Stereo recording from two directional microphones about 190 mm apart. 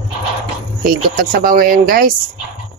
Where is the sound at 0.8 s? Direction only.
50° right (ahead or behind).